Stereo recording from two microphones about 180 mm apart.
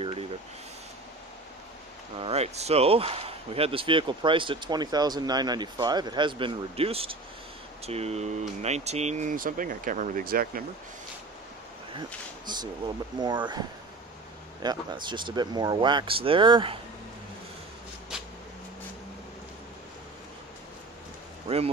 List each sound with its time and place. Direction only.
2.1 s speech: 35° right (ahead or behind); by 10.6 s 55° right (ahead or behind)
12.4 s speech: 25° right (ahead or behind)
18.1 s a sound: 5° right (ahead or behind)